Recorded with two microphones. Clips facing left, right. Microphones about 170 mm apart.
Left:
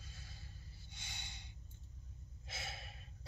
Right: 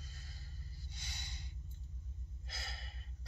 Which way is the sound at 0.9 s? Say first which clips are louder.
Even; 20° left (ahead or behind).